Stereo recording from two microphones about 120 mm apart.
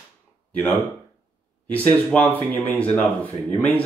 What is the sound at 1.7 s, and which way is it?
Speech, 15° left (ahead or behind).